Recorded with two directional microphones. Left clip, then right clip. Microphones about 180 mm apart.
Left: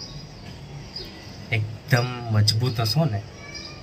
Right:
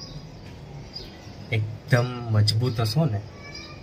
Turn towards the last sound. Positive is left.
turn(degrees=-5)  # may be behind; listen again after turning